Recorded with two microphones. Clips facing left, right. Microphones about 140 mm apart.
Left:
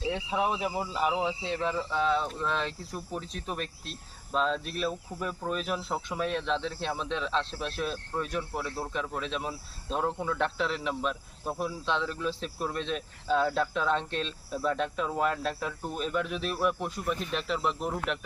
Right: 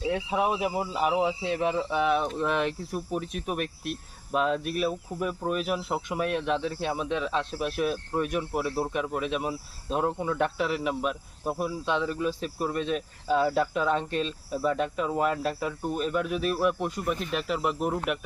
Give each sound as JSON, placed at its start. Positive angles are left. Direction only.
{"t": 0.0, "sound": "speech", "side_deg": -15}